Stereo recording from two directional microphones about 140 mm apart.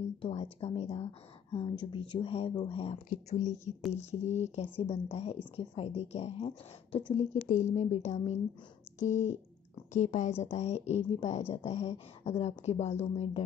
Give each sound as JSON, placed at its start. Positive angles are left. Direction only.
{"t": 0.2, "sound": "speech", "side_deg": 40}
{"t": 3.3, "sound": "speech", "side_deg": 55}
{"t": 7.4, "sound": "speech", "side_deg": 60}
{"t": 13.1, "sound": "speech", "side_deg": 40}